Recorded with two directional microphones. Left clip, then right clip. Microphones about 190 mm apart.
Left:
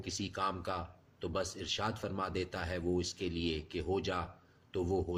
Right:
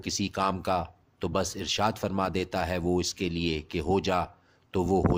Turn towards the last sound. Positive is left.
turn(degrees=-50)  # may be behind; listen again after turning